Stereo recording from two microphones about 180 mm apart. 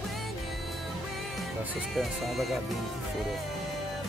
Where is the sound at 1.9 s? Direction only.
Centre (ahead or behind).